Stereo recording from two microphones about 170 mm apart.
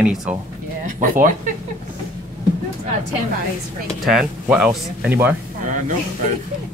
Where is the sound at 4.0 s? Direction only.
Centre (ahead or behind).